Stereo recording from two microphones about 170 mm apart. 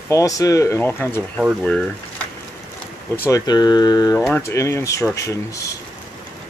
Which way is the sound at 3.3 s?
25° left (ahead or behind).